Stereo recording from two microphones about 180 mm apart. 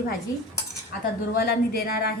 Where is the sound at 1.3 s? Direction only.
55° left (ahead or behind).